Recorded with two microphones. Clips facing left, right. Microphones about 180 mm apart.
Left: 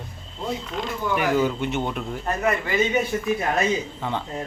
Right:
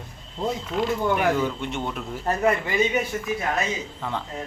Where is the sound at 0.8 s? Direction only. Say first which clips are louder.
Right 3 dB; 5° right (ahead or behind).